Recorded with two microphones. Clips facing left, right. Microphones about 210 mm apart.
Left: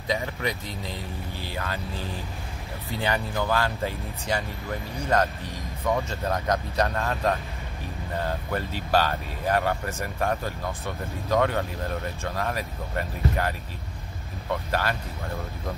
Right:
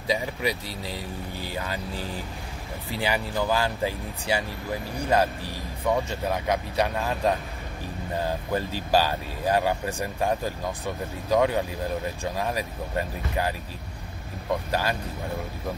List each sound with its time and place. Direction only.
0.1 s speech: 10° right (ahead or behind)
3.0 s speech: 10° right (ahead or behind)